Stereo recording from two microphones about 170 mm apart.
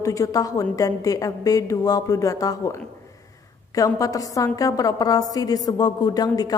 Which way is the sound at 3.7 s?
20° left (ahead or behind).